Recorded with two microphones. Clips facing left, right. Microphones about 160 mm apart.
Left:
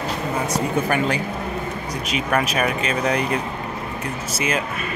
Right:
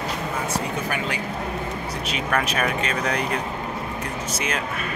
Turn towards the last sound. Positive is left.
turn(degrees=5)  # may be behind; listen again after turning